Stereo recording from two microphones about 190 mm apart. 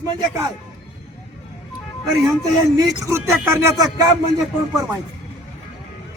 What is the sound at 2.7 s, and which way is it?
A man's voice, 15° right (ahead or behind).